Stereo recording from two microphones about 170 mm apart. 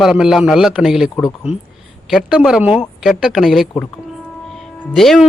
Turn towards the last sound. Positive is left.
turn(degrees=0)  # may be behind; listen again after turning